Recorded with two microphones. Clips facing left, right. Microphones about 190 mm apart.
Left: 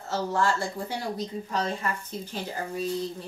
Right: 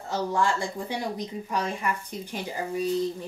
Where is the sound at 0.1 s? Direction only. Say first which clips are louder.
Even; 15° right (ahead or behind).